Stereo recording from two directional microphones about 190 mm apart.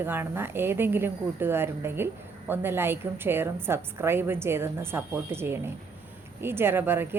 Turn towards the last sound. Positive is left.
turn(degrees=-10)  # may be behind; listen again after turning